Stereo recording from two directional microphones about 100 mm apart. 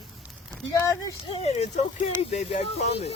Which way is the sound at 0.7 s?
35° left (ahead or behind).